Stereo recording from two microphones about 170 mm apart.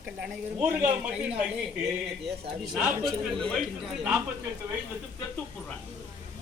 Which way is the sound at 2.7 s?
Centre (ahead or behind).